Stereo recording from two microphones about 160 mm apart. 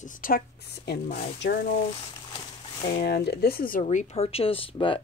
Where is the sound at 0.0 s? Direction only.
60° left (ahead or behind); by 1.6 s 80° left.